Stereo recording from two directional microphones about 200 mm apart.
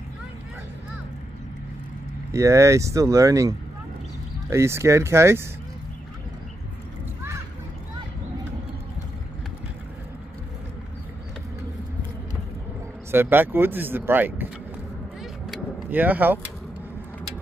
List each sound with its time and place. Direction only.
2.3 s speech: 15° right (ahead or behind)
13.1 s speech: 10° right (ahead or behind)
15.5 s vehicle: 10° right (ahead or behind)